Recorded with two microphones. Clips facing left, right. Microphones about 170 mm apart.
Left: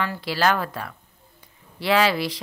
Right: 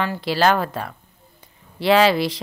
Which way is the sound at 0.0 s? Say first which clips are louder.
Right 4 dB; 25° right (ahead or behind).